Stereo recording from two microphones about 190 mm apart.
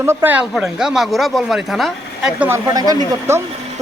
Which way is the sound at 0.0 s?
10° right (ahead or behind).